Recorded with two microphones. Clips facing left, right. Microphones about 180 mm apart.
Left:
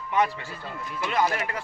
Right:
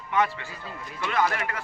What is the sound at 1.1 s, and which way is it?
Speech, 20° left (ahead or behind).